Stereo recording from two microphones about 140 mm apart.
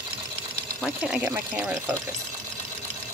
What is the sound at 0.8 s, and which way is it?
Speech, 5° right (ahead or behind).